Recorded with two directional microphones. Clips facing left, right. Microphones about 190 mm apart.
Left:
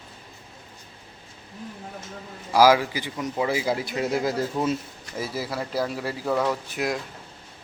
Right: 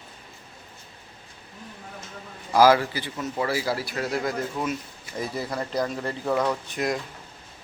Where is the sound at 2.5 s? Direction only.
10° left (ahead or behind); by 4.8 s 25° left (ahead or behind).